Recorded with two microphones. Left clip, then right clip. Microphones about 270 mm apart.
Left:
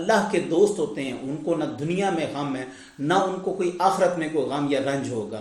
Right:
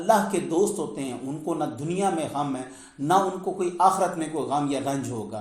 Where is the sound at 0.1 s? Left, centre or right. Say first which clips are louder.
Even; right.